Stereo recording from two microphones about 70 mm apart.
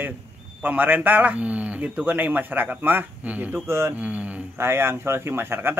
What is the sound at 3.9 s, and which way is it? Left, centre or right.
Speech, right.